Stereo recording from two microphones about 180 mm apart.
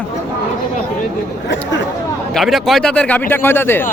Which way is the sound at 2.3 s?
Centre (ahead or behind).